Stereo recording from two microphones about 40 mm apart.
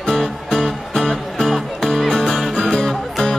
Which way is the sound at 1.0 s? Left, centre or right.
Centre.